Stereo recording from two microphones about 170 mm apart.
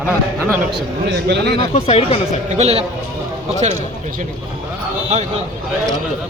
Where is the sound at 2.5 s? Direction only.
40° right (ahead or behind).